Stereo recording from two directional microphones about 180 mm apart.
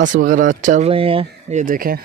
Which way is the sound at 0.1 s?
45° right (ahead or behind).